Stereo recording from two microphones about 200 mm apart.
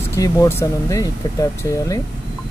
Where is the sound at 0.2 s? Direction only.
15° left (ahead or behind).